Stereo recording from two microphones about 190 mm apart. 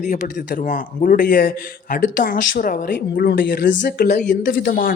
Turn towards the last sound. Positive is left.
turn(degrees=50)  # may be behind; listen again after turning